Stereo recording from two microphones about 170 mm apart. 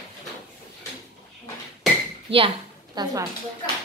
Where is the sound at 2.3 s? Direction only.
30° right (ahead or behind).